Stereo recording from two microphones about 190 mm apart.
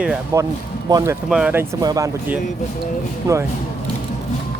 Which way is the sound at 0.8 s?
15° right (ahead or behind).